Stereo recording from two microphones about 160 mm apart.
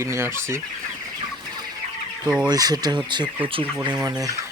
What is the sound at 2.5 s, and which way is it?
Speech, 25° right (ahead or behind).